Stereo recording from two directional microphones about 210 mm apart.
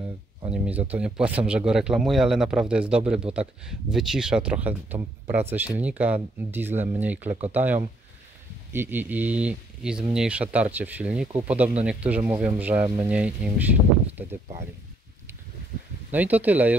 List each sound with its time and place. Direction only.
0.7 s speech: 5° right (ahead or behind)
16.1 s speech: 10° right (ahead or behind)